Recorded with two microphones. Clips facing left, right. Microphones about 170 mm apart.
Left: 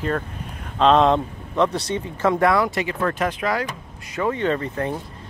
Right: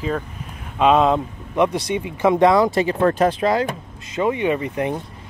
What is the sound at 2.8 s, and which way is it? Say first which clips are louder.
Speech: right 6 dB; 35° right (ahead or behind).